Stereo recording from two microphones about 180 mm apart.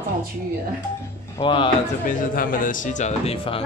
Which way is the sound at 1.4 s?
30° left (ahead or behind).